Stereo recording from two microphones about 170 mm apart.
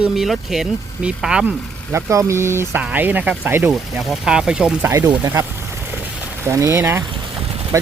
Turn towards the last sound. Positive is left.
turn(degrees=-15)  # may be behind; listen again after turning